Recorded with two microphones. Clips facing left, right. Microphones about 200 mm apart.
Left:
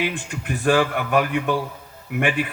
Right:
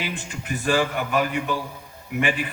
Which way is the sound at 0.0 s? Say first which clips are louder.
Left 5 dB; 55° left (ahead or behind).